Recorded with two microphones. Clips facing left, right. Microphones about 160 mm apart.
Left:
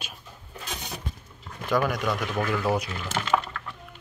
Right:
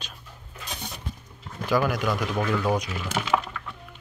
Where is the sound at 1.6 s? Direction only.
Centre (ahead or behind).